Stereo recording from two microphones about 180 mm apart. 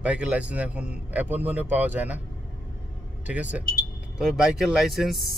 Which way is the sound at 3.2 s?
10° right (ahead or behind).